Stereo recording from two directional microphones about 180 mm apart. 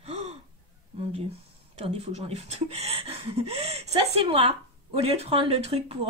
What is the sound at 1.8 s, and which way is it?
Speech, 35° right (ahead or behind).